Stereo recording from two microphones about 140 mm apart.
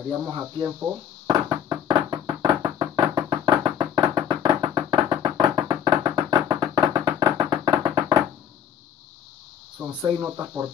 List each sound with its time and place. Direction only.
0.2 s speech: 20° right (ahead or behind)
1.2 s music: 30° right (ahead or behind)
9.8 s speech: 10° right (ahead or behind)